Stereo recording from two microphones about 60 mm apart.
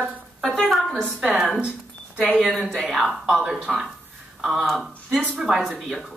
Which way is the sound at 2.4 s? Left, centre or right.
Centre.